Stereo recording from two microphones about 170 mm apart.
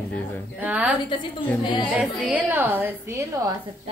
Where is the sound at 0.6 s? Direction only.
10° right (ahead or behind).